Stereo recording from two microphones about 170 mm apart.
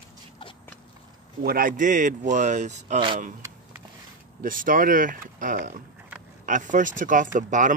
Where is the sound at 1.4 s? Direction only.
55° right (ahead or behind).